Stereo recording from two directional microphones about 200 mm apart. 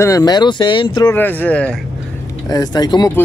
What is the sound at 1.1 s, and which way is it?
Speech, 10° left (ahead or behind).